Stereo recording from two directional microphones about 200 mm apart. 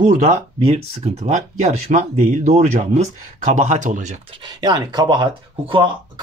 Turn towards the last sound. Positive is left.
turn(degrees=-25)  # may be behind; listen again after turning